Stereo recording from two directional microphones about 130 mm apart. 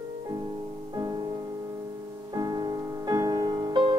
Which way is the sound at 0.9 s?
30° right (ahead or behind).